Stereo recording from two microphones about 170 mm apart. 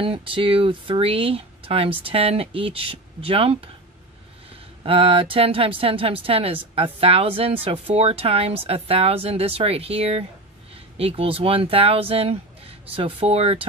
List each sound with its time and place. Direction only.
0.0 s speech: 30° right (ahead or behind)
4.8 s speech: 30° right (ahead or behind)